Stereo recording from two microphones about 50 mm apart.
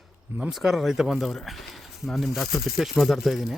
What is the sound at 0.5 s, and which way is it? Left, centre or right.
Speech, centre.